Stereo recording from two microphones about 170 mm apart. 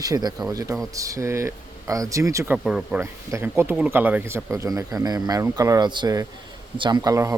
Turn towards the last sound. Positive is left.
turn(degrees=-20)  # may be behind; listen again after turning